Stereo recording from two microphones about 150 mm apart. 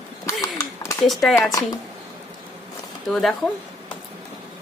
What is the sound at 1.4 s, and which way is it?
Speech, 25° left (ahead or behind).